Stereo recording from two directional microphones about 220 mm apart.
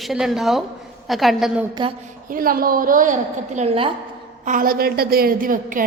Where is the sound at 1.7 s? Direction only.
20° right (ahead or behind).